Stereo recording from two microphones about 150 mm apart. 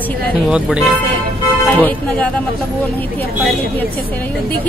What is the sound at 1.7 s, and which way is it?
Speech, 10° left (ahead or behind).